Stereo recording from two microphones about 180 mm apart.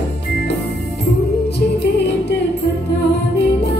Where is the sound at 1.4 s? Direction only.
70° left (ahead or behind).